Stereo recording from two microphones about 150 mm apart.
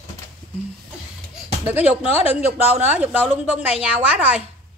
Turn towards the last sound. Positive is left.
turn(degrees=-10)  # may be behind; listen again after turning